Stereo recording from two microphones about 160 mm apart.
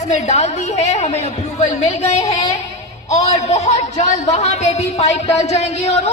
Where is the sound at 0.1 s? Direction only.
45° left (ahead or behind).